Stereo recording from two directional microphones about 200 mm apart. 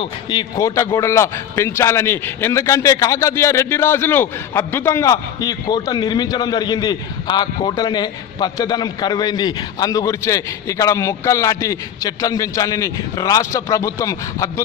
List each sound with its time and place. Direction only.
0.0 s a man's voice: 20° left (ahead or behind)